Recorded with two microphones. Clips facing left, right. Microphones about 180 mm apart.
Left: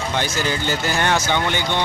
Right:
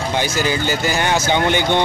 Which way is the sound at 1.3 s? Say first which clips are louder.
Right 5 dB; 20° right (ahead or behind).